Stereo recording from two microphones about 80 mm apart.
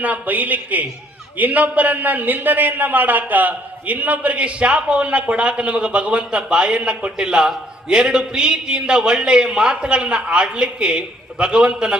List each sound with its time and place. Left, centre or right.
0.0 s a man's voice: centre